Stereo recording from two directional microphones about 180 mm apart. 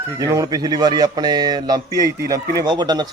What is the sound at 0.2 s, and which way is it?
Speech, 20° right (ahead or behind).